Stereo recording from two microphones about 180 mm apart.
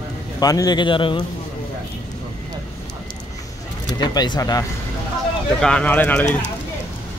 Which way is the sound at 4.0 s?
25° left (ahead or behind).